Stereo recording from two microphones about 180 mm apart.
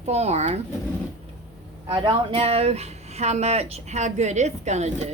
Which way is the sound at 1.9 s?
30° right (ahead or behind).